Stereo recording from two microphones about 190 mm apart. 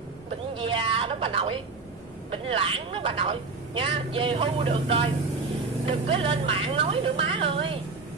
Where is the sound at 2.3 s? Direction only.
30° right (ahead or behind).